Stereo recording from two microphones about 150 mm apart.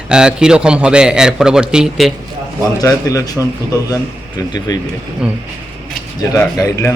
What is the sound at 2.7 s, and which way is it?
Speech, 20° left (ahead or behind).